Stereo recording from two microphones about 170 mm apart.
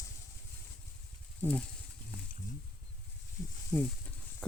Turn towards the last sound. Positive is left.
turn(degrees=10)  # may be behind; listen again after turning